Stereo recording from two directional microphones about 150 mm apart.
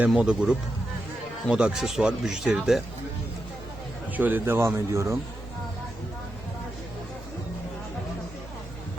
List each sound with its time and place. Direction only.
0.1 s speech: 5° right (ahead or behind)
4.2 s speech: 10° right (ahead or behind)